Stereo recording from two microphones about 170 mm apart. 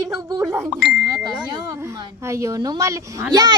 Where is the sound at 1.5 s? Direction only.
20° right (ahead or behind).